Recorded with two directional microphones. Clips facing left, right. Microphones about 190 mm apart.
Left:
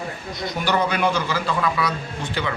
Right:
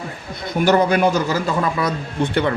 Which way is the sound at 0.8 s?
40° right (ahead or behind).